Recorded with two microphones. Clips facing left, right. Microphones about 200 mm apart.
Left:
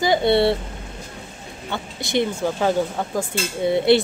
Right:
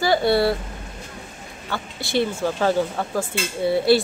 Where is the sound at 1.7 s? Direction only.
20° left (ahead or behind).